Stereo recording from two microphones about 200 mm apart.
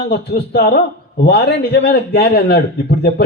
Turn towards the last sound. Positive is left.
turn(degrees=55)  # may be behind; listen again after turning